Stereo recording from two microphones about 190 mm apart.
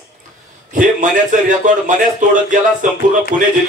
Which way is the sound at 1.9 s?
45° right (ahead or behind).